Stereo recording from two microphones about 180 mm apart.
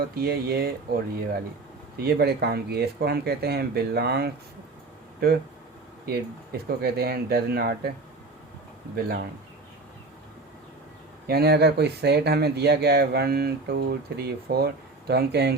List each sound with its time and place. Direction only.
0.0 s speech: 60° right (ahead or behind)
2.0 s speech: 60° right (ahead or behind)
9.0 s speech: 55° right (ahead or behind)
11.3 s speech: 60° right (ahead or behind)